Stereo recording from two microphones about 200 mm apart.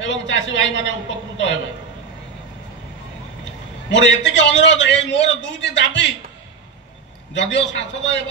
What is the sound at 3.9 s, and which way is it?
A man's voice, 65° left (ahead or behind).